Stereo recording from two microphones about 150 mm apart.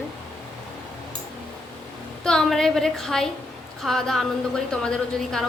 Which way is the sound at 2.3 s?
5° left (ahead or behind).